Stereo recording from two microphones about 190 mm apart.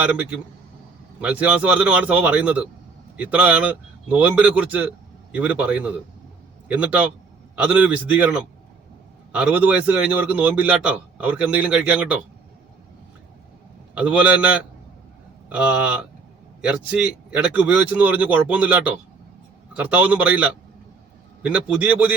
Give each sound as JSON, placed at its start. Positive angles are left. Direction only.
{"t": 0.0, "sound": "a man's voice", "side_deg": -5}
{"t": 13.9, "sound": "a man's voice", "side_deg": -5}